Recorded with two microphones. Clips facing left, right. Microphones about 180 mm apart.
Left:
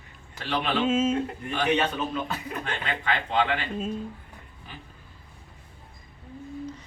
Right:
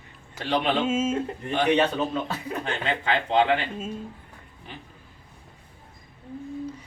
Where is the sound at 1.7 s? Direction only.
35° right (ahead or behind).